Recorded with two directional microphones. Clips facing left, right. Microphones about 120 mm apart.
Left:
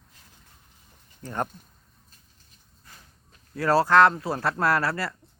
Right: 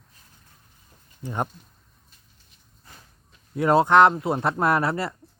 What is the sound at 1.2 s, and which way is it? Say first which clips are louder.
Speech: right 1 dB; 15° right (ahead or behind).